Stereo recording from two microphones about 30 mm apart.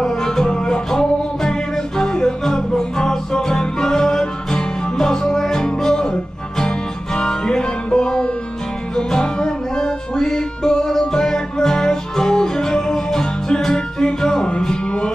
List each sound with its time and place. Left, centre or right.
0.0 s music: left
7.2 s music: left